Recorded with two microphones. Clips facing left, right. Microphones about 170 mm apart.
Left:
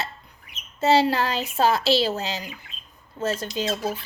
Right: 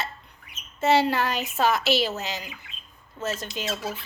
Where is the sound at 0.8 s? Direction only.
30° left (ahead or behind).